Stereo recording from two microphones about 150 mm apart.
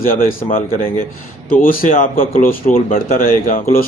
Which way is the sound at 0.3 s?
70° left (ahead or behind).